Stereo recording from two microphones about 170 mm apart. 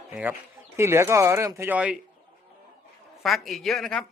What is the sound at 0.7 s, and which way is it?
Speech, 15° right (ahead or behind).